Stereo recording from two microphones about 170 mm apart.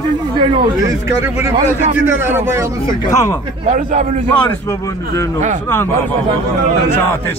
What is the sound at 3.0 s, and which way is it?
Speech, 20° left (ahead or behind).